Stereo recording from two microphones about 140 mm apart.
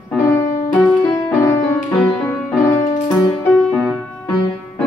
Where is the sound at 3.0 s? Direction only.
25° left (ahead or behind).